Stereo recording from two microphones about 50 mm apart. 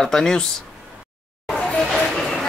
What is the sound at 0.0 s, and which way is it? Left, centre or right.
Speech, centre.